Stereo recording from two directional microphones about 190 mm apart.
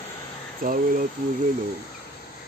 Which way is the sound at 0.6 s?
50° right (ahead or behind).